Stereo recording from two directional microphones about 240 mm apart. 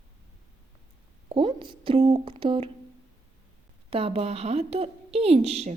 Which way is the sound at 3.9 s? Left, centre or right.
Right.